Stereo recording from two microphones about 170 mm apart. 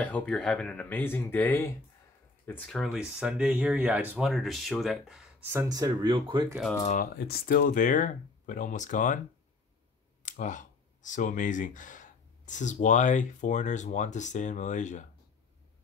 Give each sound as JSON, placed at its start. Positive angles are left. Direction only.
{"t": 0.0, "sound": "speech", "side_deg": 10}
{"t": 7.2, "sound": "speech", "side_deg": 60}
{"t": 10.2, "sound": "speech", "side_deg": 50}